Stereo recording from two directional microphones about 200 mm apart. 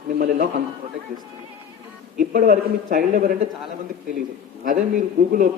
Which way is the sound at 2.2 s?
45° right (ahead or behind).